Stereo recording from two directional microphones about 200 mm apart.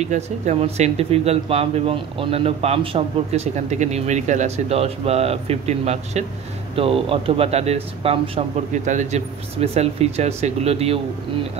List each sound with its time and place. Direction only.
0.0 s speech: 35° right (ahead or behind)